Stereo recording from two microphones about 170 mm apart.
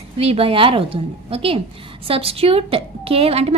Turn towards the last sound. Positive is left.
turn(degrees=-35)  # may be behind; listen again after turning